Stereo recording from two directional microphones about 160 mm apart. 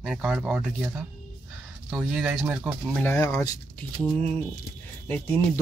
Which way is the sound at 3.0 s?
10° left (ahead or behind).